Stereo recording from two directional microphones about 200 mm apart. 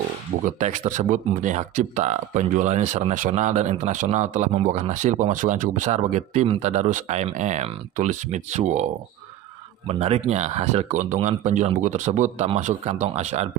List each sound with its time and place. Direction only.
0.5 s speech: 35° right (ahead or behind)
9.8 s speech: 30° right (ahead or behind)